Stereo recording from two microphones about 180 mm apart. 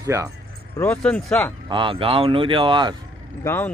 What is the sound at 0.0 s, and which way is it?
Speech, 15° right (ahead or behind).